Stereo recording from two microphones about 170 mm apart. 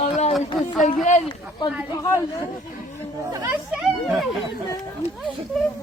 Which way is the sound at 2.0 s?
15° left (ahead or behind).